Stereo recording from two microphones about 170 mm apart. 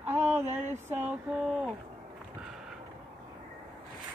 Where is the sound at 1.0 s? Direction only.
5° right (ahead or behind).